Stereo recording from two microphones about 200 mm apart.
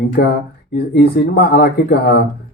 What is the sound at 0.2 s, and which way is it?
Speech, 50° left (ahead or behind).